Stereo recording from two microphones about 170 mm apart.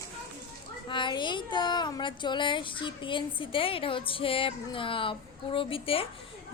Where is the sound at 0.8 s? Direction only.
30° left (ahead or behind).